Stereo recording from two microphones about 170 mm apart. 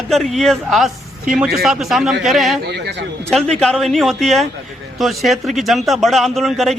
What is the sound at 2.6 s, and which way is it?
Speech, 85° right.